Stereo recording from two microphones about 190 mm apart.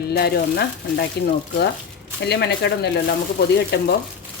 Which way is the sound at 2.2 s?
60° left (ahead or behind).